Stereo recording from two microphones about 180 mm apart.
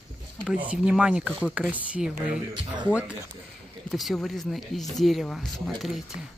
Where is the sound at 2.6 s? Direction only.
25° right (ahead or behind).